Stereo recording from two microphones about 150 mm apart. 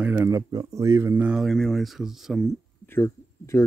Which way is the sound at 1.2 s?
5° right (ahead or behind).